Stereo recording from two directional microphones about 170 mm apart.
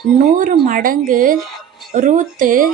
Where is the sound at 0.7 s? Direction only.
55° right (ahead or behind).